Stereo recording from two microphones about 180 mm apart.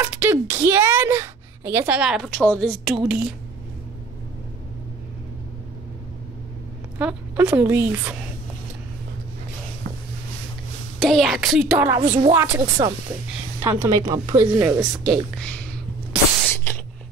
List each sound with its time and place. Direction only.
0.0 s a woman's voice: 10° right (ahead or behind)
2.3 s a woman's voice: 10° left (ahead or behind)
7.0 s speech: 10° right (ahead or behind)
11.0 s a woman's voice: centre (ahead or behind)
15.3 s a sound: 5° left (ahead or behind)